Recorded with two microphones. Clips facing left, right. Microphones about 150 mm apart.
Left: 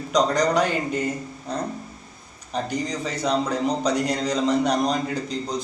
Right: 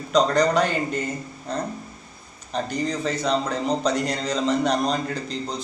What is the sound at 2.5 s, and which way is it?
A man's voice, 10° left (ahead or behind).